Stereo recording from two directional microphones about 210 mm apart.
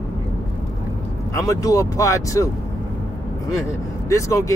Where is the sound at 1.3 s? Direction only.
15° left (ahead or behind).